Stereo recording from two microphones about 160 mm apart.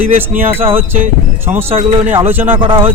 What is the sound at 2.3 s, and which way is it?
Speech, 10° right (ahead or behind).